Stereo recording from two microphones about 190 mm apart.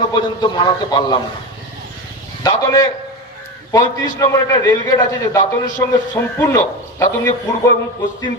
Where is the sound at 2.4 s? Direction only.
15° left (ahead or behind).